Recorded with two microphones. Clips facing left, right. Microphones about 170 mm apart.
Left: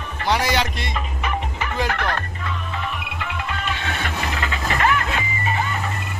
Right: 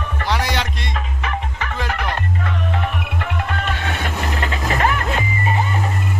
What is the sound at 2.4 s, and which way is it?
Music, 65° right (ahead or behind).